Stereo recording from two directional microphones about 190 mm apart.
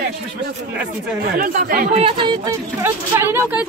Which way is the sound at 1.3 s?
50° right (ahead or behind).